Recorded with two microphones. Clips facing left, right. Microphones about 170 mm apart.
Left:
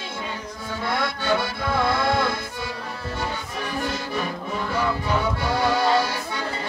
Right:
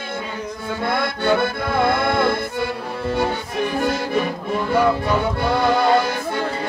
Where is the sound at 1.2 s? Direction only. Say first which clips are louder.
Right 5 dB; 55° right (ahead or behind).